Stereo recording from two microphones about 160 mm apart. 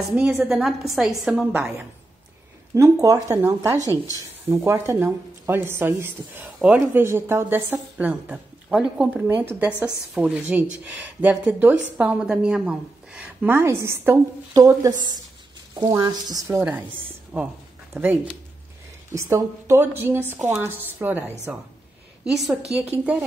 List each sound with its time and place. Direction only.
0.1 s a woman's voice: 10° right (ahead or behind)
2.7 s a woman's voice: 20° right (ahead or behind)
3.8 s speech: 20° left (ahead or behind)
4.5 s a woman's voice: 15° right (ahead or behind)
17.3 s a woman's voice: 10° right (ahead or behind)